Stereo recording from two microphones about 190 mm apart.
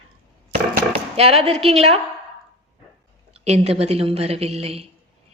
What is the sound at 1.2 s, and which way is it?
Speech, 30° right (ahead or behind).